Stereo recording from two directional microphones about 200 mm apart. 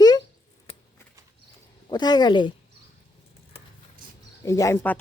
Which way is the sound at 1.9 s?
20° left (ahead or behind).